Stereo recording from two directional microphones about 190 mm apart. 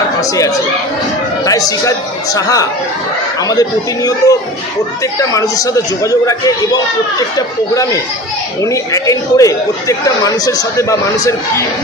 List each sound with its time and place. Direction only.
0.2 s speech: 20° left (ahead or behind)